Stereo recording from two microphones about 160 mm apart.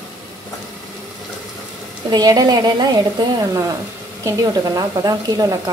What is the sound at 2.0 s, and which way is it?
Speech, 25° right (ahead or behind).